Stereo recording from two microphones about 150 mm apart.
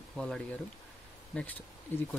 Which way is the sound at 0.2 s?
5° left (ahead or behind).